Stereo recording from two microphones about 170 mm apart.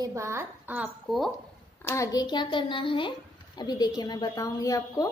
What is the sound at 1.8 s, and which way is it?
Speech, 15° left (ahead or behind).